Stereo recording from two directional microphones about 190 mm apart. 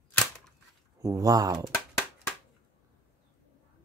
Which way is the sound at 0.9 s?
15° right (ahead or behind).